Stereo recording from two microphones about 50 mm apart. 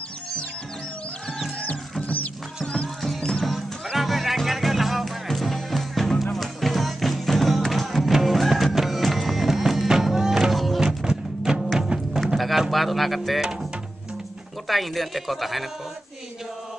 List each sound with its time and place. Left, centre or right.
1.6 s music: left
3.0 s music: centre
3.4 s music: centre
10.8 s music: centre
12.7 s speech: centre
14.7 s speech: centre